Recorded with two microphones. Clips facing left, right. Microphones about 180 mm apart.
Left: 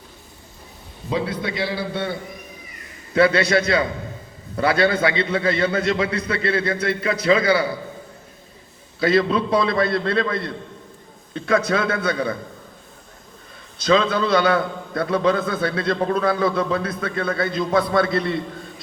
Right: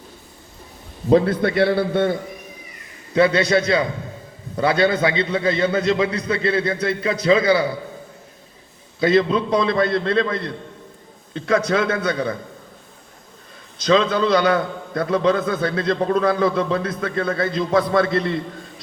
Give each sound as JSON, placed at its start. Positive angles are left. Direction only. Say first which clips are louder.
{"t": 1.1, "sound": "a man's voice", "louder": "right 9 dB", "side_deg": -55}
{"t": 3.2, "sound": "a man's voice", "louder": "right 1 dB", "side_deg": -20}
{"t": 9.0, "sound": "a man's voice", "louder": "right 1 dB", "side_deg": -20}
{"t": 13.9, "sound": "a man's voice", "louder": "right 1 dB", "side_deg": -25}